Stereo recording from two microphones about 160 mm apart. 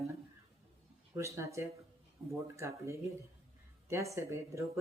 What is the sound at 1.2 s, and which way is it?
Speech, 20° right (ahead or behind).